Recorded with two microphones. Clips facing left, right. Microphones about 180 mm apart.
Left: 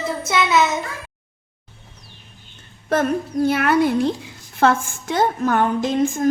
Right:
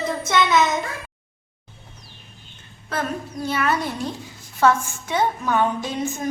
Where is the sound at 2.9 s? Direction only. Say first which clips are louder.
Left 8 dB; 50° left (ahead or behind).